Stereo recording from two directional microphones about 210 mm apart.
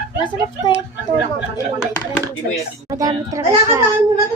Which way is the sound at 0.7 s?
20° left (ahead or behind).